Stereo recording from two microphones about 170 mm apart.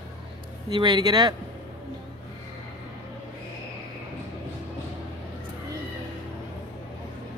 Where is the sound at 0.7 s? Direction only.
30° right (ahead or behind).